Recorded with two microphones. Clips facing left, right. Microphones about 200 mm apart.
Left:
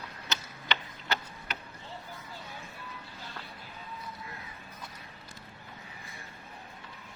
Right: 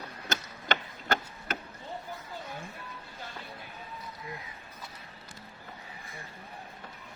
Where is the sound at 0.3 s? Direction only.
50° right (ahead or behind).